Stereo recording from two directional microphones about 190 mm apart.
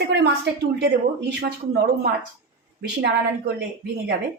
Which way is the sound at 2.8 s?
55° right (ahead or behind).